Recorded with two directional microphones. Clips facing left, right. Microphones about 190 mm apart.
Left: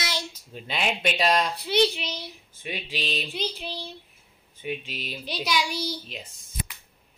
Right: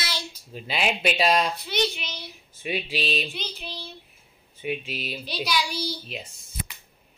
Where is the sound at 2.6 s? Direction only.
10° right (ahead or behind).